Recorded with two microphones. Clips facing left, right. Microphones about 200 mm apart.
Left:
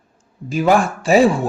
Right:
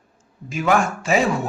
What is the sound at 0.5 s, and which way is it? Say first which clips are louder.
Speech: left 4 dB; 35° left (ahead or behind).